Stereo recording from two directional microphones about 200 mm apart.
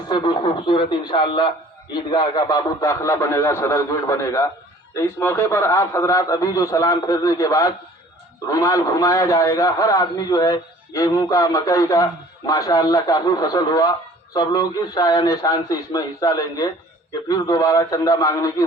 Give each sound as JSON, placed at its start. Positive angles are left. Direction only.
{"t": 0.1, "sound": "a man's voice", "side_deg": 25}